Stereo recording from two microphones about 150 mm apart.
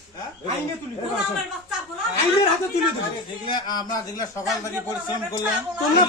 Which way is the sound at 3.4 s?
30° left (ahead or behind).